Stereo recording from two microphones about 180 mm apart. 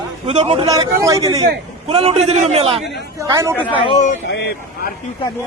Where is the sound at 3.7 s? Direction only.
30° left (ahead or behind).